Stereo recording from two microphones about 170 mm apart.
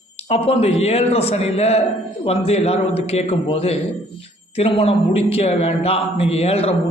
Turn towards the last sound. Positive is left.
turn(degrees=35)  # may be behind; listen again after turning